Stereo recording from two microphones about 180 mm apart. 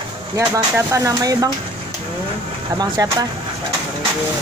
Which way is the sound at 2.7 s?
20° right (ahead or behind).